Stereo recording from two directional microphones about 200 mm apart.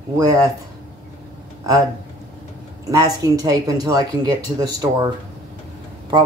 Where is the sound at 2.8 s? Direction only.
15° right (ahead or behind).